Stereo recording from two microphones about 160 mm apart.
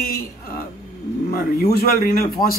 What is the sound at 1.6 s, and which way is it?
Speech, 70° left (ahead or behind).